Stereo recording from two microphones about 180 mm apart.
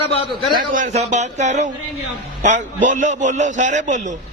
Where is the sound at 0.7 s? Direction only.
40° right (ahead or behind).